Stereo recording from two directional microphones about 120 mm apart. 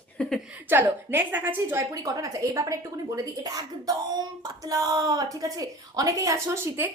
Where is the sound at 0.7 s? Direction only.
15° right (ahead or behind).